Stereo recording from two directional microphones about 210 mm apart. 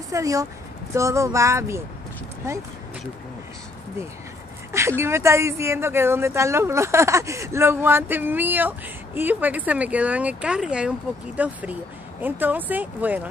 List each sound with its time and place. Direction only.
0.1 s a woman's voice: 15° right (ahead or behind)
4.7 s a woman's voice: 10° right (ahead or behind)